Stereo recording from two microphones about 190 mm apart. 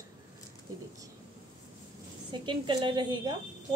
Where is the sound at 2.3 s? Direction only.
25° right (ahead or behind).